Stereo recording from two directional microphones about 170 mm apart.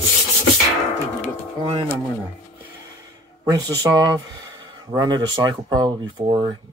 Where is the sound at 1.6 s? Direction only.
30° right (ahead or behind).